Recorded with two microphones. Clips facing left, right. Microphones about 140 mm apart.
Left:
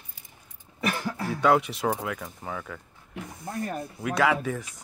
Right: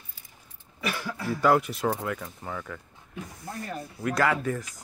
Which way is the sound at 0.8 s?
45° left (ahead or behind).